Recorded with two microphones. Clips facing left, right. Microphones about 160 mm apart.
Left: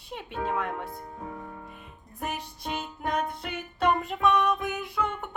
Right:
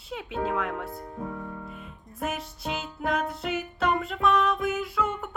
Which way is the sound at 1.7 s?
Centre (ahead or behind).